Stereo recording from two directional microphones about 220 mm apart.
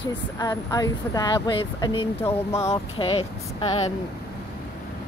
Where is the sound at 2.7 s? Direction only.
25° left (ahead or behind).